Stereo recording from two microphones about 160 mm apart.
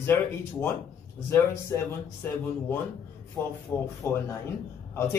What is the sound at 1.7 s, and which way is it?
Speech, 15° left (ahead or behind).